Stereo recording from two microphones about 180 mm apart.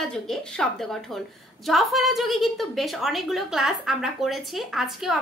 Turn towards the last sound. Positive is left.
turn(degrees=0)  # may be behind; listen again after turning